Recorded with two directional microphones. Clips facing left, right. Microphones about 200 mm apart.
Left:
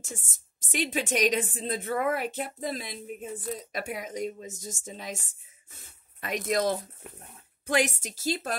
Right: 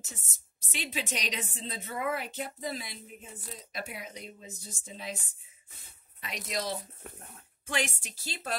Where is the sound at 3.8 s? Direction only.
50° left (ahead or behind).